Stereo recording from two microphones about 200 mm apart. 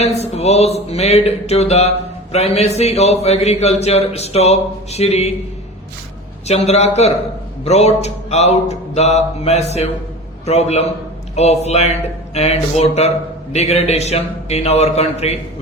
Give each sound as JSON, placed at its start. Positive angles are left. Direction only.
{"t": 0.0, "sound": "a man's voice", "side_deg": 30}
{"t": 6.5, "sound": "a man's voice", "side_deg": 35}